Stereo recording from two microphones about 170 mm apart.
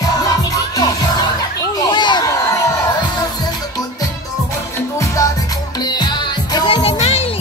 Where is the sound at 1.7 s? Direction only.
25° left (ahead or behind).